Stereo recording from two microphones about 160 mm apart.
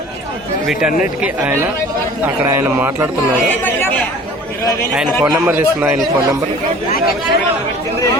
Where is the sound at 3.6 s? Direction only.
10° left (ahead or behind).